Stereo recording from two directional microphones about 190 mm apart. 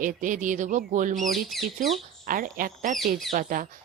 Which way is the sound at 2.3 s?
45° right (ahead or behind).